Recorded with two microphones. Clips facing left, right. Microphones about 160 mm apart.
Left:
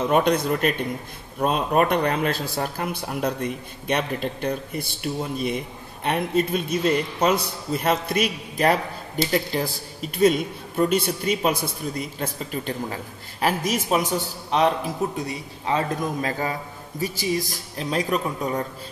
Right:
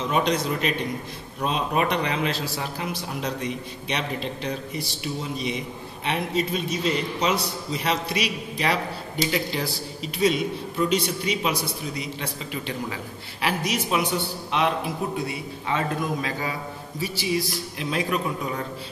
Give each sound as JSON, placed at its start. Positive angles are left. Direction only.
{"t": 0.0, "sound": "a man's voice", "side_deg": 55}